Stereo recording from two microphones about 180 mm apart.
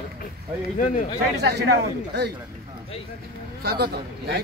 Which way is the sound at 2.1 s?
70° right (ahead or behind).